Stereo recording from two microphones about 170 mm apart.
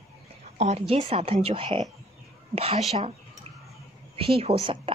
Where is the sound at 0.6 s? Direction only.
40° right (ahead or behind).